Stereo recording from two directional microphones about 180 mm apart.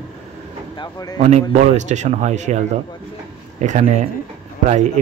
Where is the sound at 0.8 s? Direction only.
20° left (ahead or behind).